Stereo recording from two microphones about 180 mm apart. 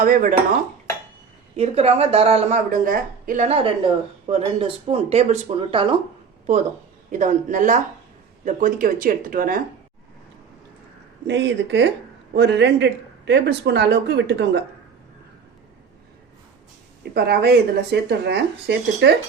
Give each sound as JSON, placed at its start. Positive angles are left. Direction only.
{"t": 0.0, "sound": "speech", "side_deg": -50}
{"t": 1.5, "sound": "a woman's voice", "side_deg": -35}
{"t": 7.1, "sound": "speech", "side_deg": -45}
{"t": 11.3, "sound": "speech", "side_deg": -75}
{"t": 17.2, "sound": "speech", "side_deg": -65}